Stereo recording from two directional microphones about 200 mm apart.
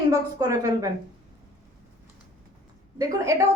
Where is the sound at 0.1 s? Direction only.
15° right (ahead or behind).